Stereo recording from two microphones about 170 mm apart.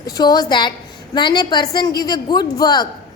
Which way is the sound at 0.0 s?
25° left (ahead or behind).